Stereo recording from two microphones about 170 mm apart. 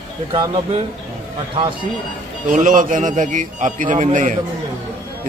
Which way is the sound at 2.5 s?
50° right (ahead or behind).